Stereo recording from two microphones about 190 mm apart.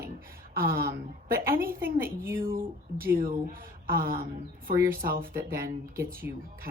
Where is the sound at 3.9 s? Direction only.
50° right (ahead or behind).